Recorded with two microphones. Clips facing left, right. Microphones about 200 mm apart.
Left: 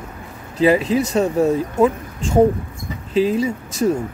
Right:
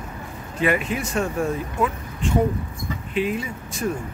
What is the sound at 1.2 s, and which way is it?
Speech, 20° left (ahead or behind).